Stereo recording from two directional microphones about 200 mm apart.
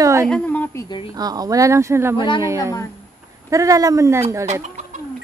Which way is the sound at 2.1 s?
25° left (ahead or behind).